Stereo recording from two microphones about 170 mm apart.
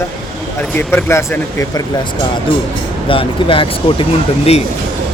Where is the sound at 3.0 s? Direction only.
30° left (ahead or behind).